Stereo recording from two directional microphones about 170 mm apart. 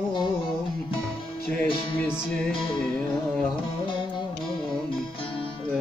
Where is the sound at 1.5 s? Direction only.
5° left (ahead or behind).